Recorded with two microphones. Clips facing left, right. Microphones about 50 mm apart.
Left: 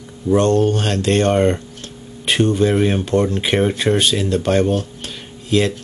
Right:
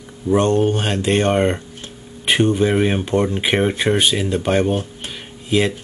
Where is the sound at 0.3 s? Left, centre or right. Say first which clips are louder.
Left 1 dB; centre.